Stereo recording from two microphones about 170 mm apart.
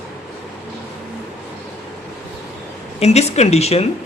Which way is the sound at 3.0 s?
40° left (ahead or behind).